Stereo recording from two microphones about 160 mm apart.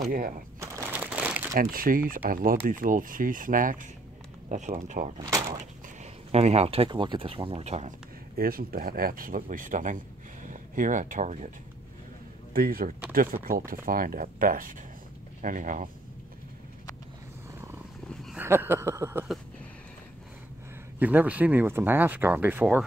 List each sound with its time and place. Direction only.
0.6 s crumpling: 15° right (ahead or behind)
1.5 s speech: 65° right (ahead or behind); by 5.2 s 50° right (ahead or behind)
5.3 s speech: 25° right (ahead or behind)
6.3 s speech: 40° right (ahead or behind)
8.4 s speech: 65° right (ahead or behind)
12.5 s speech: 65° right (ahead or behind)
18.0 s cat: 5° left (ahead or behind)
18.4 s speech: 15° right (ahead or behind)
21.0 s speech: 10° right (ahead or behind)